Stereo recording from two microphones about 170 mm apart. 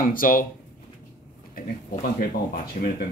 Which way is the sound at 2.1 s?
55° left (ahead or behind).